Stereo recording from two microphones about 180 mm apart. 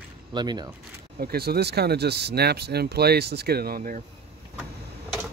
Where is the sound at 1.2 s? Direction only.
60° right (ahead or behind).